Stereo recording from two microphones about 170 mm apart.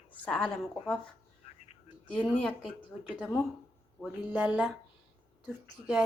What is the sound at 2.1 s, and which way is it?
Speech, 5° left (ahead or behind).